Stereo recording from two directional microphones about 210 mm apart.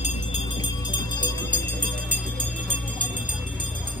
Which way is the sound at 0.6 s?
20° left (ahead or behind).